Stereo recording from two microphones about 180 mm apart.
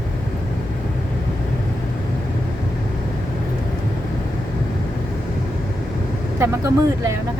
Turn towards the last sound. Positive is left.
turn(degrees=-15)  # may be behind; listen again after turning